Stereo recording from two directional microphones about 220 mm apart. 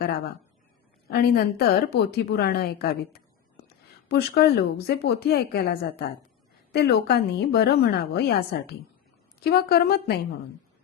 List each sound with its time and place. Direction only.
1.1 s a woman's voice: 45° left (ahead or behind)